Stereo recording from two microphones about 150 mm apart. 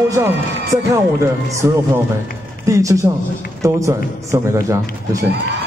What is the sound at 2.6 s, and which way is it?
A man's voice, 20° right (ahead or behind).